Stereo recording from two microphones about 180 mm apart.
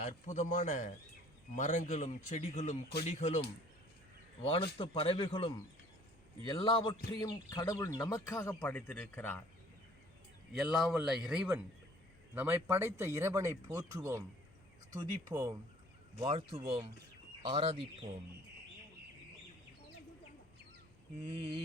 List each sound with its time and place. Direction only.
0.0 s a man's voice: 40° left (ahead or behind)
4.8 s speech: 30° left (ahead or behind); by 9.4 s 10° left (ahead or behind)
10.5 s a man's voice: centre (ahead or behind); by 15.5 s 20° right (ahead or behind)
16.2 s speech: 30° right (ahead or behind)
21.2 s speech: 30° right (ahead or behind)